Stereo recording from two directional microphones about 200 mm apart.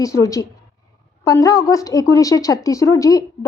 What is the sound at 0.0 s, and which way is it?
A woman's voice, 15° left (ahead or behind).